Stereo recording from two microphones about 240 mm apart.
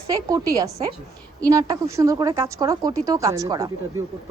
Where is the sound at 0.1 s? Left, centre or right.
Centre.